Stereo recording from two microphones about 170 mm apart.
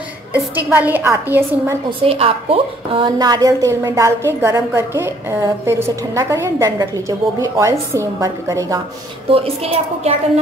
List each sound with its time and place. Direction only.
0.4 s a woman's voice: 10° right (ahead or behind)
1.9 s a woman's voice: 35° right (ahead or behind)
9.3 s a woman's voice: 35° right (ahead or behind)